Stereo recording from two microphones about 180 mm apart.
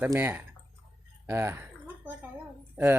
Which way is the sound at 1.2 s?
15° right (ahead or behind).